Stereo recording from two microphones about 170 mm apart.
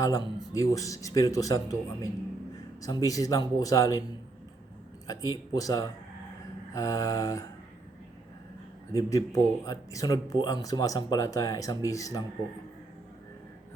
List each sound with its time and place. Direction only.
0.0 s speech: 20° left (ahead or behind)
5.0 s speech: 20° left (ahead or behind)
8.9 s speech: 20° left (ahead or behind)